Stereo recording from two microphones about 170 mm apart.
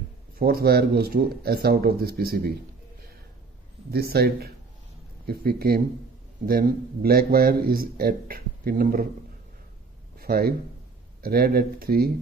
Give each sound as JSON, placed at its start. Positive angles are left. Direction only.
{"t": 0.4, "sound": "speech", "side_deg": -65}
{"t": 3.9, "sound": "a man's voice", "side_deg": -65}
{"t": 10.1, "sound": "a sound", "side_deg": -60}
{"t": 11.1, "sound": "speech", "side_deg": -65}